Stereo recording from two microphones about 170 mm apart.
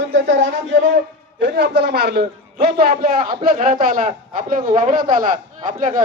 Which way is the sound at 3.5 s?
50° right (ahead or behind).